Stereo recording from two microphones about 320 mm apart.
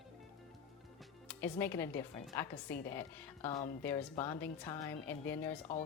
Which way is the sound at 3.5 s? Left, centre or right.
Centre.